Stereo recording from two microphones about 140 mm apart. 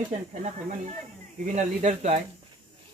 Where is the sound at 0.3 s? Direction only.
55° right (ahead or behind).